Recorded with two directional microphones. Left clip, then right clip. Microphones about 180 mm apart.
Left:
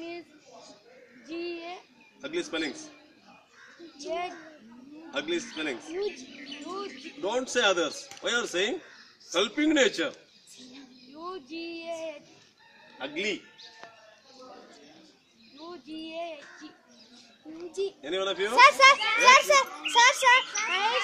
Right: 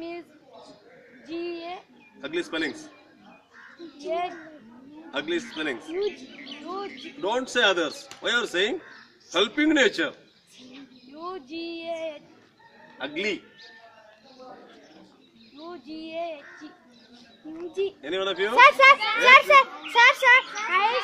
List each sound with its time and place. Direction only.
1.2 s a sound: 20° right (ahead or behind)
2.2 s speech: 5° left (ahead or behind)
4.1 s speech: 25° right (ahead or behind)
5.1 s speech: centre (ahead or behind)
5.9 s speech: 20° right (ahead or behind)
7.2 s speech: 5° left (ahead or behind)
11.1 s speech: 25° right (ahead or behind)
13.0 s a man's voice: centre (ahead or behind)
15.7 s speech: 25° right (ahead or behind)
18.0 s speech: 10° right (ahead or behind)
18.6 s a child's voice: 40° right (ahead or behind)
18.9 s a child's voice: 40° left (ahead or behind)
19.2 s a child's voice: 40° right (ahead or behind)